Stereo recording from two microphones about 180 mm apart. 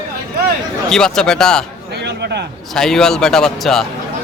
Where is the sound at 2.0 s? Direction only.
70° right (ahead or behind).